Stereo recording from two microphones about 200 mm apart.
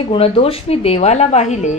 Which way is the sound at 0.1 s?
30° left (ahead or behind).